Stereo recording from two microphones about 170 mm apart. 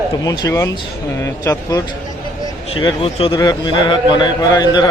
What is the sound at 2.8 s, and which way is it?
A man's voice, 30° left (ahead or behind).